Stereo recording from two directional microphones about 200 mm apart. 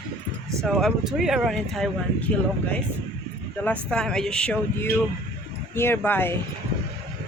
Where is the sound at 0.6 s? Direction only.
Centre (ahead or behind).